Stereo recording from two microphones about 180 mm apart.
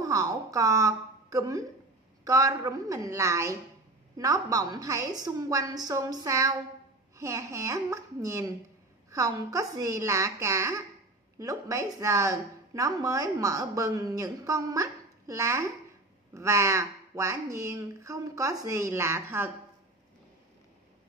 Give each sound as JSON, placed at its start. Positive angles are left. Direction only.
{"t": 0.0, "sound": "a woman's voice", "side_deg": -20}